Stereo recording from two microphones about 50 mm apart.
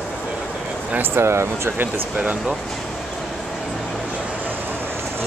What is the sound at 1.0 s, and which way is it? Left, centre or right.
Speech, right.